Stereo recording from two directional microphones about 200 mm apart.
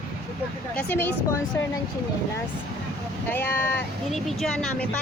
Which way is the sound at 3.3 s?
10° left (ahead or behind).